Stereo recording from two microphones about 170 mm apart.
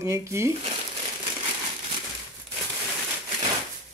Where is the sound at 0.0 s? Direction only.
15° right (ahead or behind).